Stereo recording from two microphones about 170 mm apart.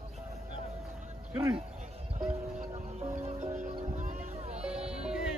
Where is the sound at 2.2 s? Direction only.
40° right (ahead or behind).